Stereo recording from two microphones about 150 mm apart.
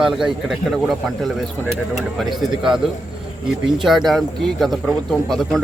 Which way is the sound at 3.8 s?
Centre (ahead or behind).